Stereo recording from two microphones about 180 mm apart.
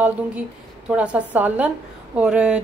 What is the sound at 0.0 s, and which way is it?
A woman's voice, 5° right (ahead or behind).